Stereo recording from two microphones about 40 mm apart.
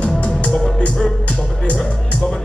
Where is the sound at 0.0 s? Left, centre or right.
Left.